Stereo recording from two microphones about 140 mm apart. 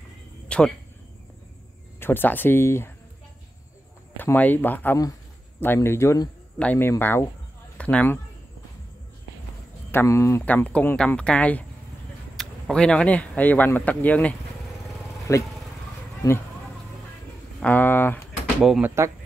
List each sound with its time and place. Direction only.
0.5 s a sound: 10° left (ahead or behind)
2.0 s speech: 15° left (ahead or behind)
4.2 s speech: 15° left (ahead or behind)
6.6 s speech: 15° left (ahead or behind)
9.8 s speech: 20° left (ahead or behind)
15.3 s speech: 20° left (ahead or behind)
17.6 s speech: 10° left (ahead or behind)
18.6 s speech: 5° right (ahead or behind)
18.9 s speech: 20° right (ahead or behind)